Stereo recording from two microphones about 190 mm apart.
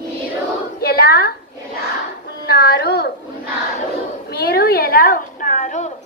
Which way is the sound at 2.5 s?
55° left (ahead or behind).